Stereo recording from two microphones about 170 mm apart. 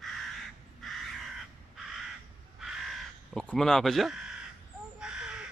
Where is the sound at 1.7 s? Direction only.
Centre (ahead or behind).